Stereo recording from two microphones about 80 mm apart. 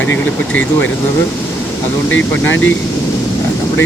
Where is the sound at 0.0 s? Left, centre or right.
Left.